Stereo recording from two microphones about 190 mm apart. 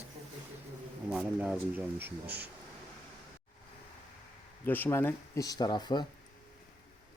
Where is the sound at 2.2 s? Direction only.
60° right (ahead or behind).